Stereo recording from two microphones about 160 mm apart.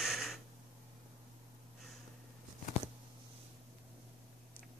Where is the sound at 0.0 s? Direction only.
Centre (ahead or behind).